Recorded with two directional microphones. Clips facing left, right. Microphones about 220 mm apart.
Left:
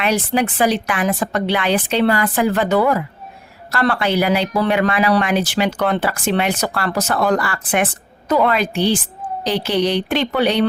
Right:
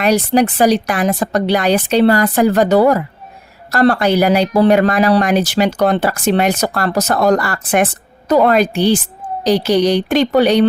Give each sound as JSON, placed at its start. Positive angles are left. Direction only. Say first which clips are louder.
{"t": 0.0, "sound": "a woman's voice", "louder": "right 5 dB", "side_deg": -40}